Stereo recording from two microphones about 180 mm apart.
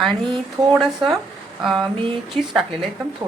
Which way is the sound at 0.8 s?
Centre (ahead or behind).